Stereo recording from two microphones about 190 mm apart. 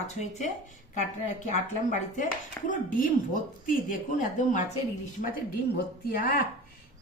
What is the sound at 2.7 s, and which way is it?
A woman's voice, 45° left (ahead or behind).